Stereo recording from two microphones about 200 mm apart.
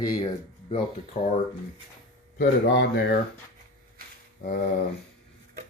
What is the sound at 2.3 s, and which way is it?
Speech, 55° left (ahead or behind).